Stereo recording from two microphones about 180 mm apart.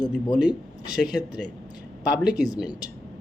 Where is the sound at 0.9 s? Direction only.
5° right (ahead or behind).